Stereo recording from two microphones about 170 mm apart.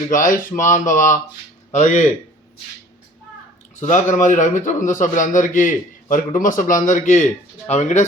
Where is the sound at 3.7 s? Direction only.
45° left (ahead or behind).